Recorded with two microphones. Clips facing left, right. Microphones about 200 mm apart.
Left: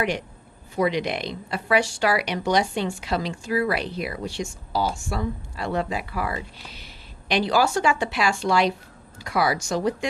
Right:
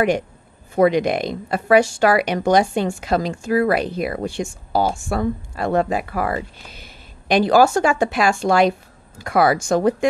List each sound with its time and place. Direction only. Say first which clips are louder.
0.7 s speech: right 7 dB; 50° right (ahead or behind)